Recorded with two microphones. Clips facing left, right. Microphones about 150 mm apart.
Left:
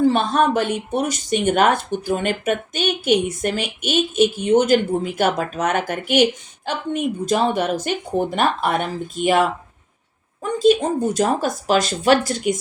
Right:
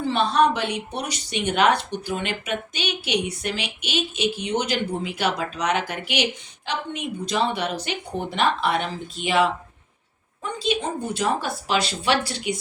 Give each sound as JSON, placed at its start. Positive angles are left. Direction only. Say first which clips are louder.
{"t": 0.0, "sound": "speech", "louder": "left 3 dB", "side_deg": 45}
{"t": 10.6, "sound": "speech", "louder": "left 10 dB", "side_deg": 45}